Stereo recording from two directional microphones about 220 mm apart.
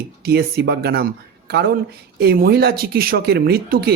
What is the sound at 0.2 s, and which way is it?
Speech, 45° right (ahead or behind).